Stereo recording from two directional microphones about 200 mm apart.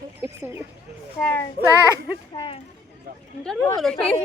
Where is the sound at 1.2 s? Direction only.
10° left (ahead or behind).